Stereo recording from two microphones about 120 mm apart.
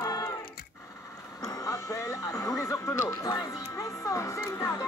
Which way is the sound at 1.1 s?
30° left (ahead or behind).